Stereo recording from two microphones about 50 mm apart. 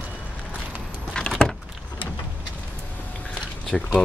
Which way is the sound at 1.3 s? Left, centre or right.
Centre.